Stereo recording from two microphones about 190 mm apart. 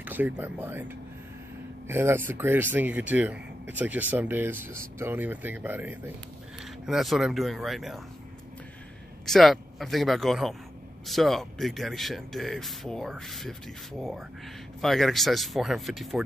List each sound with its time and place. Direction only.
0.0 s speech: 10° right (ahead or behind)
9.2 s speech: centre (ahead or behind)
14.8 s speech: centre (ahead or behind)